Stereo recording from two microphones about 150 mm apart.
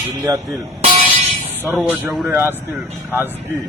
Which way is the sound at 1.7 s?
Centre (ahead or behind).